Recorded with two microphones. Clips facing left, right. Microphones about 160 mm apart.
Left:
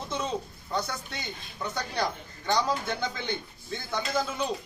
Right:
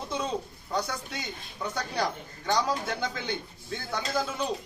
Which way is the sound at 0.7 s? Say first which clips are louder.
Right 1 dB; 10° right (ahead or behind).